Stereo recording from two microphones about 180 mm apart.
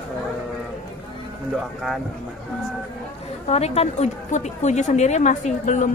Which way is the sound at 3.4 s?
35° left (ahead or behind).